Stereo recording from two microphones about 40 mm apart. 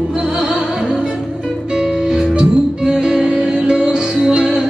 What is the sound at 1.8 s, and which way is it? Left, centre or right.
Music, centre.